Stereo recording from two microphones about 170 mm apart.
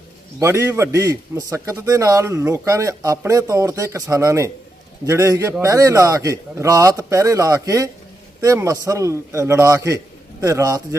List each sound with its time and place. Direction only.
0.3 s a man's voice: 15° right (ahead or behind)